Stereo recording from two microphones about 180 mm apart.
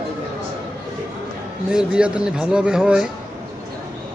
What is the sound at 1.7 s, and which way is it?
A man's voice, 5° right (ahead or behind).